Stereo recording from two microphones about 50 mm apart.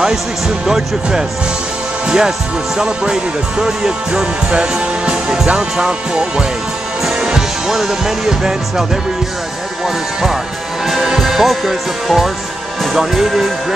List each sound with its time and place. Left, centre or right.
0.7 s speech: centre
7.1 s music: centre
10.9 s speech: centre